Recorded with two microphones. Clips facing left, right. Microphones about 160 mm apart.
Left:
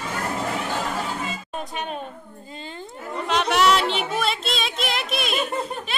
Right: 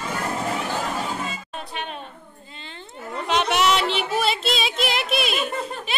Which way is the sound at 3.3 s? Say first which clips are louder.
Left 1 dB; centre (ahead or behind).